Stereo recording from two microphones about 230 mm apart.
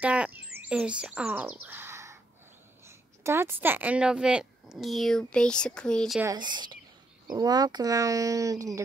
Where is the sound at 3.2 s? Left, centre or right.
Centre.